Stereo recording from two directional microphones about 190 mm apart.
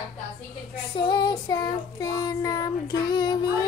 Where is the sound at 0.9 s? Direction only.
25° left (ahead or behind).